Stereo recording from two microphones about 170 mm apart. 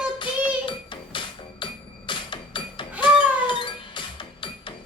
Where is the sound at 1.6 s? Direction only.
30° left (ahead or behind).